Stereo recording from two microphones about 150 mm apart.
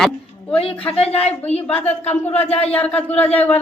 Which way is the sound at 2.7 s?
10° left (ahead or behind).